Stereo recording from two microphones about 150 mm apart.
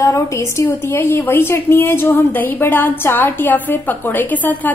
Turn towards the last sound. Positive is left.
turn(degrees=10)  # may be behind; listen again after turning